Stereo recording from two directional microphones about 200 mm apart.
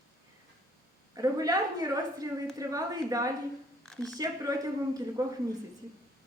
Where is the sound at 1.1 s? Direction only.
20° right (ahead or behind).